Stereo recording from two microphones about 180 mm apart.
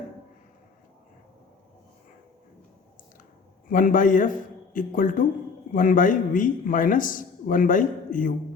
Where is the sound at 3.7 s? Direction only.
50° left (ahead or behind).